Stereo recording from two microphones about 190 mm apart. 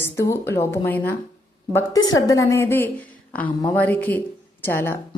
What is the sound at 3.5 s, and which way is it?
Speech, 20° left (ahead or behind).